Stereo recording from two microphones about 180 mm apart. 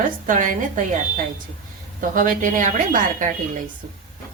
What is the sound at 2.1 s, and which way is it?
A woman's voice, 50° right (ahead or behind).